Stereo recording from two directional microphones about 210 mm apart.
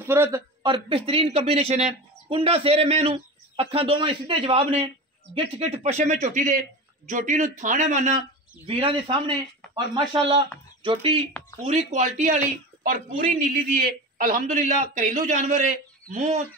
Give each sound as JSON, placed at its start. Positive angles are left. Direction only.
{"t": 0.0, "sound": "a man's voice", "side_deg": -10}